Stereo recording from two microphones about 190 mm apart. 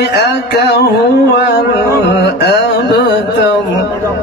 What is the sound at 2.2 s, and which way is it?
Mantra, 60° left (ahead or behind).